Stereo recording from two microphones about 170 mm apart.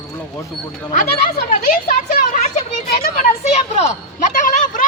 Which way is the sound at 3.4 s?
40° left (ahead or behind).